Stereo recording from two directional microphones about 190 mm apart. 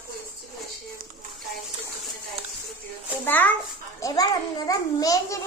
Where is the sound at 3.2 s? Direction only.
10° left (ahead or behind).